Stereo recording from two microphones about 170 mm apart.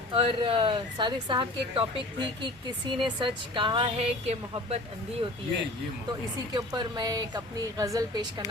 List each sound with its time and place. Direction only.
0.1 s a woman's voice: 30° right (ahead or behind)
6.5 s a woman's voice: 25° right (ahead or behind)